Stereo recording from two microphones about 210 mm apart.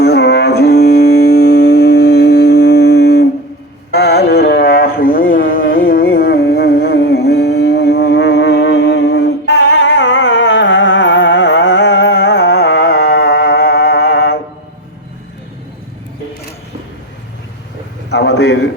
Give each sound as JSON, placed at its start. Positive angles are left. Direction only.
{"t": 0.0, "sound": "music", "side_deg": 50}
{"t": 3.9, "sound": "mantra", "side_deg": 50}
{"t": 18.1, "sound": "a sound", "side_deg": 55}